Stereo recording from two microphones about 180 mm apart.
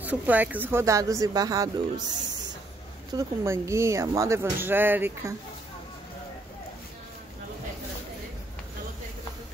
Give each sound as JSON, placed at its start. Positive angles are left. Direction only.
{"t": 0.0, "sound": "speech", "side_deg": -10}
{"t": 3.2, "sound": "speech", "side_deg": -15}